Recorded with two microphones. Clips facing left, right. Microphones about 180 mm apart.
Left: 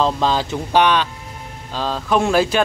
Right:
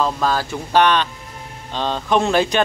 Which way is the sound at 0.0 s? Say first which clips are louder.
Left 2 dB; 25° left (ahead or behind).